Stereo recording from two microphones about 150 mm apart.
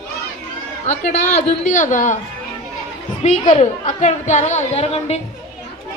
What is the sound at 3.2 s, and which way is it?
Speech, 50° left (ahead or behind).